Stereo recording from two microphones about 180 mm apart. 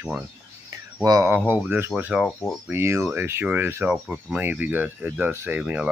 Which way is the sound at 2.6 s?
15° right (ahead or behind).